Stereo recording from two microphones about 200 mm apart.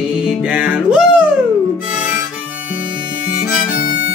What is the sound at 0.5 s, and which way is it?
Music, 5° right (ahead or behind).